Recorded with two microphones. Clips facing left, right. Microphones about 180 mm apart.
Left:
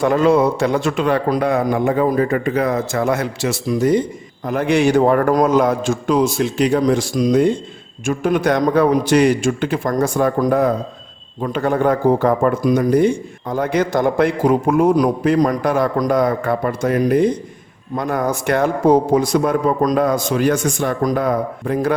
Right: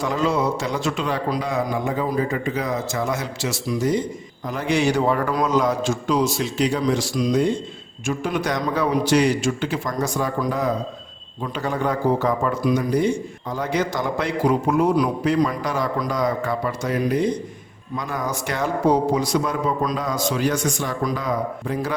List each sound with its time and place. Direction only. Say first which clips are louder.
0.0 s a man's voice: left 8 dB; 55° left (ahead or behind)